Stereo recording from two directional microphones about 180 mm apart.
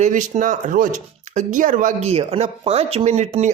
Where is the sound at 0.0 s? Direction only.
45° right (ahead or behind).